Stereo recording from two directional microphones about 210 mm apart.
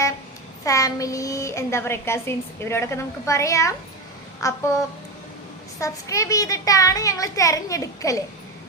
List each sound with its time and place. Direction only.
0.6 s a woman's voice: 15° left (ahead or behind)
5.8 s a woman's voice: 15° left (ahead or behind)